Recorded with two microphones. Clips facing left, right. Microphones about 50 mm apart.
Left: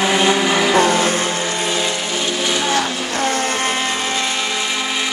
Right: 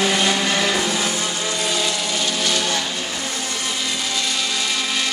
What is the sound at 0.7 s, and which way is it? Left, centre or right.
Vehicle, left.